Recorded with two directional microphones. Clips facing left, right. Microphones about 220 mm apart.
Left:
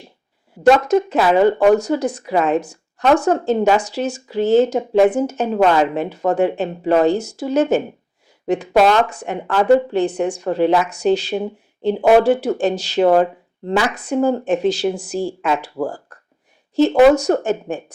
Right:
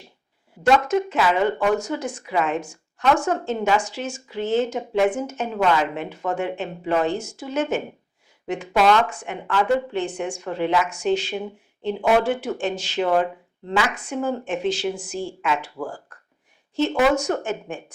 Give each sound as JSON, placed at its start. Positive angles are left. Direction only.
{"t": 0.7, "sound": "speech", "side_deg": 40}